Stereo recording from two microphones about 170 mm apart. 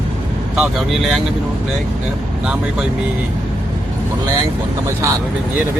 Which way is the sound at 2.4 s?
5° right (ahead or behind).